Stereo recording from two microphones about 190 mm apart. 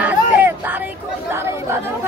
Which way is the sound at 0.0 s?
10° right (ahead or behind).